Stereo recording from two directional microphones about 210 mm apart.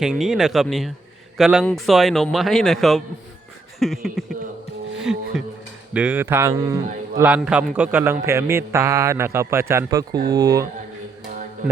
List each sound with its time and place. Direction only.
0.0 s a man's voice: centre (ahead or behind)
3.8 s a sound: centre (ahead or behind)
5.1 s music: centre (ahead or behind)
5.9 s a man's voice: 5° right (ahead or behind)